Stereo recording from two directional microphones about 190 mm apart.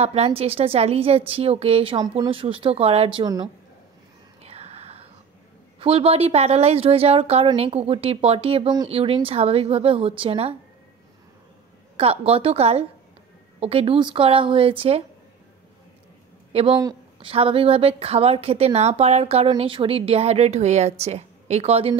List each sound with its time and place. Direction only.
0.0 s a woman's voice: 35° right (ahead or behind)
4.4 s whispering: 35° right (ahead or behind)
5.8 s a woman's voice: 30° right (ahead or behind)
12.0 s a woman's voice: 30° right (ahead or behind)
16.8 s a woman's voice: 30° right (ahead or behind)